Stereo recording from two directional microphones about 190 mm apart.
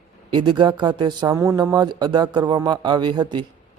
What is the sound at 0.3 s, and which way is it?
A man's voice, 25° right (ahead or behind).